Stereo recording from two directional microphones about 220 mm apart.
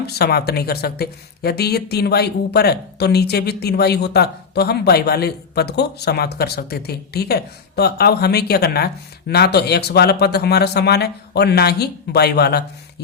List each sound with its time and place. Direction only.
0.0 s speech: 45° left (ahead or behind)